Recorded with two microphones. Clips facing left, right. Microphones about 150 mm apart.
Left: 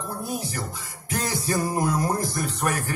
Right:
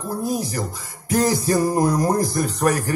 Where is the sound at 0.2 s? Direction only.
40° right (ahead or behind).